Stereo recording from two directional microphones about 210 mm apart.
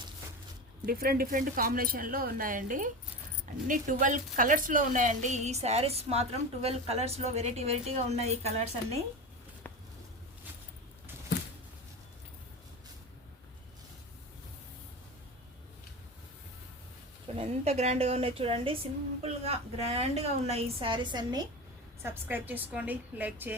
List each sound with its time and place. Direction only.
0.9 s a woman's voice: 45° right (ahead or behind); by 9.0 s 30° right (ahead or behind)
17.3 s a woman's voice: 30° right (ahead or behind); by 23.6 s 10° right (ahead or behind)